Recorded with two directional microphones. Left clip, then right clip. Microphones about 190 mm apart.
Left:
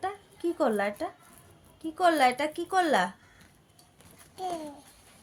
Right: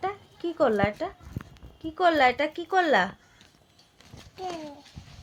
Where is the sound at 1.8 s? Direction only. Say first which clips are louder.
Right 2 dB; 35° right (ahead or behind).